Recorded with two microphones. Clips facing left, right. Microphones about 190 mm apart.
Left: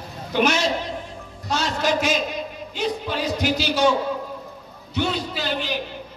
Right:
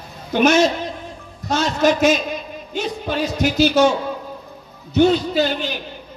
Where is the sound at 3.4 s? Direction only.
45° right (ahead or behind).